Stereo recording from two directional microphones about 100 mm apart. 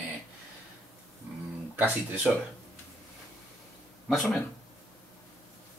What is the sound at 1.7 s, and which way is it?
Speech, 15° right (ahead or behind).